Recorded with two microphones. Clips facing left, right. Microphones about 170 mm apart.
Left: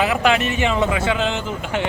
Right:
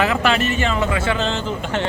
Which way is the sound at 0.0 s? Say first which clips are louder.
Even; 15° left (ahead or behind).